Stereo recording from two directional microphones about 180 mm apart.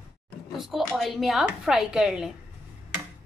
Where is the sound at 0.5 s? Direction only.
Centre (ahead or behind).